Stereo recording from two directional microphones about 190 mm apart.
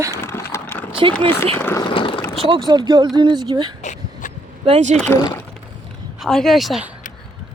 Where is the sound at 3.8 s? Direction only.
40° left (ahead or behind).